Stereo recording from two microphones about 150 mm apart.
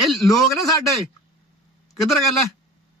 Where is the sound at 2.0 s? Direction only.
Centre (ahead or behind).